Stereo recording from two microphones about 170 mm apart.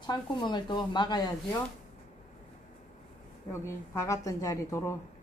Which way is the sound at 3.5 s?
15° left (ahead or behind).